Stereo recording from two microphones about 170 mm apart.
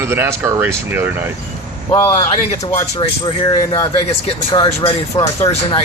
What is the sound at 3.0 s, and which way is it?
Speech, 30° left (ahead or behind).